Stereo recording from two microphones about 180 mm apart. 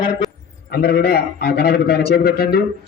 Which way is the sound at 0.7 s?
60° left (ahead or behind).